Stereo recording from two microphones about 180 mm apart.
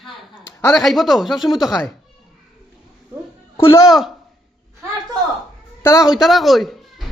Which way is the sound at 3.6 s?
20° left (ahead or behind).